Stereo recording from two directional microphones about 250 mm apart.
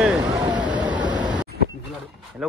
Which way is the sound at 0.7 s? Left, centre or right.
Centre.